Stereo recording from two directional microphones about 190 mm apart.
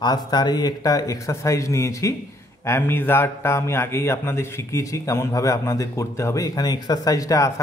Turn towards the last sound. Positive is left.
turn(degrees=15)  # may be behind; listen again after turning